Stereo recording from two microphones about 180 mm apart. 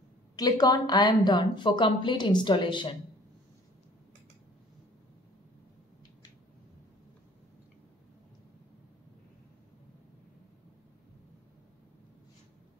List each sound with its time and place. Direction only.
0.4 s a woman's voice: 20° left (ahead or behind)